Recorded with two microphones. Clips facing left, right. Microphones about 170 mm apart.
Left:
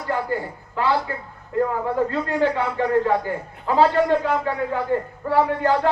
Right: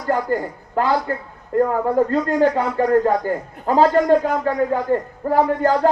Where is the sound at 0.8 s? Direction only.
45° right (ahead or behind).